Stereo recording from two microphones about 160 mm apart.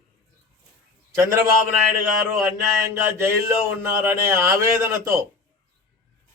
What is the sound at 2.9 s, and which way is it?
Speech, 15° right (ahead or behind).